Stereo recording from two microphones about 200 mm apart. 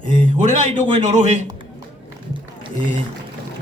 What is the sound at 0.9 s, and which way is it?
Speech, 35° right (ahead or behind).